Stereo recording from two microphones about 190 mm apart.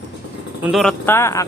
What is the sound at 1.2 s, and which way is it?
Speech, 15° left (ahead or behind).